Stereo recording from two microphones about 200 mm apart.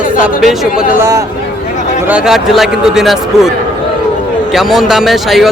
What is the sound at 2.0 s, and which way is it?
Speech, 5° right (ahead or behind).